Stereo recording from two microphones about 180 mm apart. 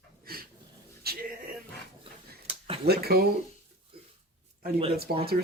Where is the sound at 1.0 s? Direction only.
60° right (ahead or behind).